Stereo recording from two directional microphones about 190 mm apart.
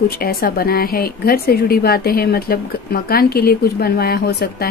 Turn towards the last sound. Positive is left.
turn(degrees=55)  # may be behind; listen again after turning